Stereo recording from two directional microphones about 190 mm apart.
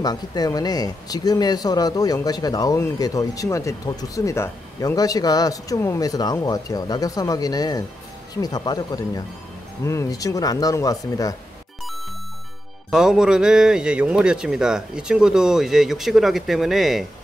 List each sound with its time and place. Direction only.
0.0 s speech: 20° left (ahead or behind)
12.9 s a man's voice: 5° right (ahead or behind)